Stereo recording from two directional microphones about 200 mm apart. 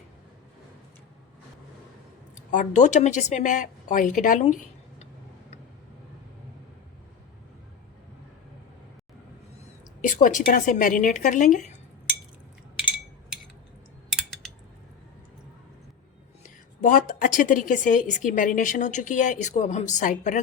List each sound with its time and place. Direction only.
2.3 s speech: 40° left (ahead or behind)
10.0 s a woman's voice: 40° left (ahead or behind)
14.1 s a sound: centre (ahead or behind)
16.4 s a woman's voice: 40° left (ahead or behind)